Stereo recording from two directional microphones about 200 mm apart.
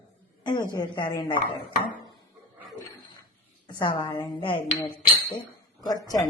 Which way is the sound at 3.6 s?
20° left (ahead or behind).